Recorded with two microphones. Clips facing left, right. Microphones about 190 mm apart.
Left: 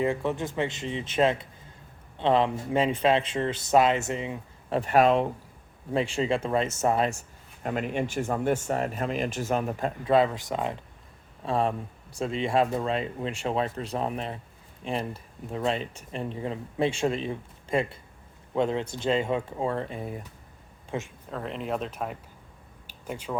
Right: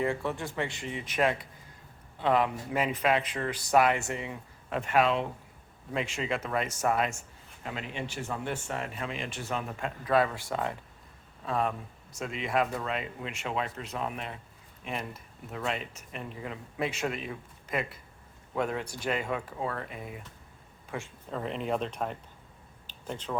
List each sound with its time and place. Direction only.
0.0 s speech: 20° left (ahead or behind)
4.7 s speech: 35° left (ahead or behind)
7.6 s speech: 50° left (ahead or behind); by 10.8 s 20° left (ahead or behind)
11.4 s speech: 30° left (ahead or behind)
20.9 s speech: 25° left (ahead or behind)
21.2 s speech: centre (ahead or behind)
22.9 s a sound: 10° left (ahead or behind)